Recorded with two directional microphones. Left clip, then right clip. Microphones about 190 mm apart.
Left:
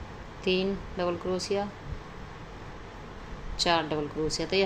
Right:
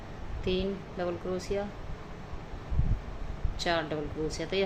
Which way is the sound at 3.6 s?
25° left (ahead or behind).